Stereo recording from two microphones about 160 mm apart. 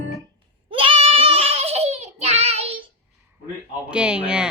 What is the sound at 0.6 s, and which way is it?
Child singing, 35° right (ahead or behind).